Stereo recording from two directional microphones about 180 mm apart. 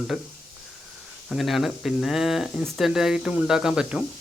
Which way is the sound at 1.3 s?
Centre (ahead or behind).